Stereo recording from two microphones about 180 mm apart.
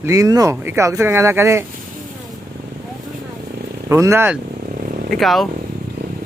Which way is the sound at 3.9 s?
15° right (ahead or behind).